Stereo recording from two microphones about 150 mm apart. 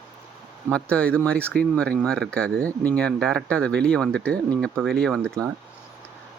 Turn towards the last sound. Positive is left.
turn(degrees=5)  # may be behind; listen again after turning